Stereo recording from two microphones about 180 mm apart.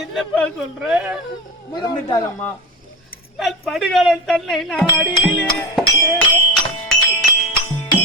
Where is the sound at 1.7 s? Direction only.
25° left (ahead or behind).